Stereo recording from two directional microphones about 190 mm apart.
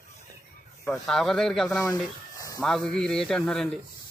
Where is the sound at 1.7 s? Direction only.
15° left (ahead or behind).